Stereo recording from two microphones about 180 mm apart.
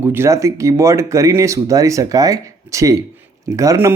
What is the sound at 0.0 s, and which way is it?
Speech, 15° right (ahead or behind).